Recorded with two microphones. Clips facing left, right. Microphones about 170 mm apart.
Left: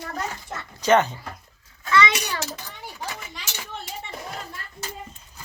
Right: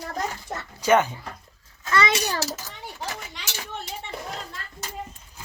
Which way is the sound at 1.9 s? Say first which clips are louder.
Left 1 dB; 45° right (ahead or behind).